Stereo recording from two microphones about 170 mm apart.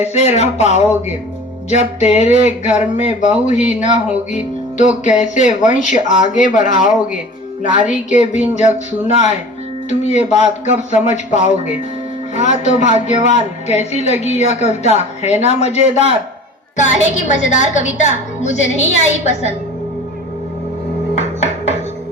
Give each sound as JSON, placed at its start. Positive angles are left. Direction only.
{"t": 0.0, "sound": "speech", "side_deg": 40}
{"t": 21.2, "sound": "music", "side_deg": 40}